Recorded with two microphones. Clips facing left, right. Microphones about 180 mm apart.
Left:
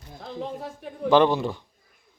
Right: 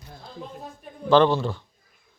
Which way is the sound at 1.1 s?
15° left (ahead or behind).